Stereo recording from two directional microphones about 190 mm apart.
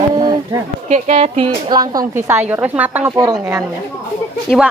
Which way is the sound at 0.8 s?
35° right (ahead or behind).